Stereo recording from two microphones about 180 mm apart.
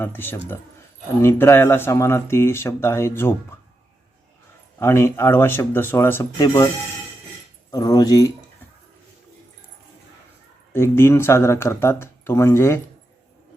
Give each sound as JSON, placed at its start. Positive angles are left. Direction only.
{"t": 0.0, "sound": "speech", "side_deg": 10}
{"t": 4.8, "sound": "speech", "side_deg": 15}
{"t": 7.7, "sound": "speech", "side_deg": 20}
{"t": 10.7, "sound": "speech", "side_deg": 15}